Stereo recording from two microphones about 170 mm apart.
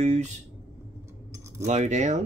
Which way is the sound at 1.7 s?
45° right (ahead or behind).